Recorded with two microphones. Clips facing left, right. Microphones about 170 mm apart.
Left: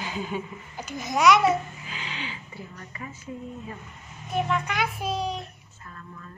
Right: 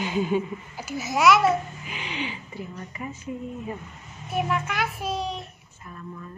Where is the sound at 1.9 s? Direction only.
15° right (ahead or behind).